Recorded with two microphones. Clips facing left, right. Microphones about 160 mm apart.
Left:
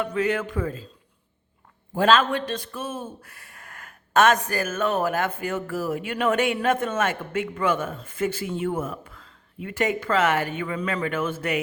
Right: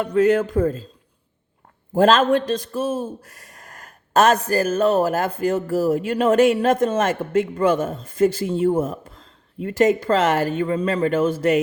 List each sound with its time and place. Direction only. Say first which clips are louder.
0.0 s a man's voice: right 7 dB; 40° right (ahead or behind)
2.0 s a man's voice: right 5 dB; 45° right (ahead or behind)